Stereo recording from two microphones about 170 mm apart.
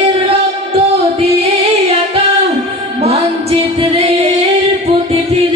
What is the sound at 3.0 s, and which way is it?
Music, 35° right (ahead or behind).